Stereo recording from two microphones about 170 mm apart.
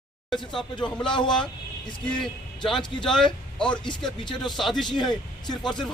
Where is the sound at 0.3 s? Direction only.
Centre (ahead or behind).